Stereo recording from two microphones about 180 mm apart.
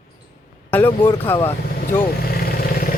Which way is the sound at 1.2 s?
10° left (ahead or behind).